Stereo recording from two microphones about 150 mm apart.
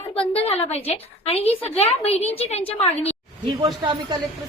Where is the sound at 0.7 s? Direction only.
40° left (ahead or behind).